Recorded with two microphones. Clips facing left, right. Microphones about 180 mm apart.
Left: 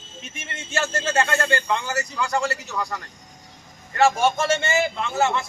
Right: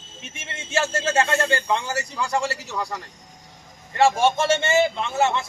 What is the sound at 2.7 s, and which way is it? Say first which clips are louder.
Speech: even; 10° right (ahead or behind).